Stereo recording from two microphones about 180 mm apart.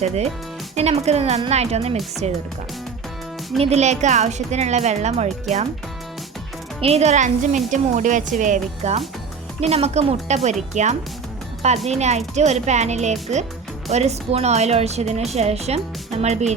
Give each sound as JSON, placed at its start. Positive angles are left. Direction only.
{"t": 0.8, "sound": "a woman's voice", "side_deg": -35}
{"t": 3.6, "sound": "a woman's voice", "side_deg": -35}
{"t": 6.8, "sound": "a woman's voice", "side_deg": -35}